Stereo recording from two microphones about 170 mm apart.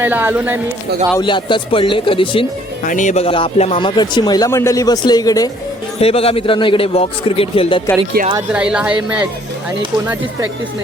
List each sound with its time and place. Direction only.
0.0 s speech: 10° right (ahead or behind)
1.2 s a man's voice: 30° left (ahead or behind)
2.8 s speech: 50° left (ahead or behind)
3.2 s speech: 30° left (ahead or behind)
6.0 s a man's voice: 35° left (ahead or behind)
8.2 s speech: 60° right (ahead or behind)
8.5 s speech: 5° right (ahead or behind)